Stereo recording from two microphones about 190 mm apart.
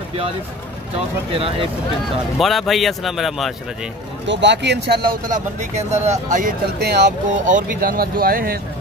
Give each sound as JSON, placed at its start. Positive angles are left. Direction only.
{"t": 0.9, "sound": "speech", "side_deg": -30}
{"t": 2.3, "sound": "a man's voice", "side_deg": 0}
{"t": 4.3, "sound": "speech", "side_deg": -70}
{"t": 5.3, "sound": "speech", "side_deg": -40}
{"t": 6.8, "sound": "speech", "side_deg": -60}
{"t": 7.4, "sound": "speech", "side_deg": -45}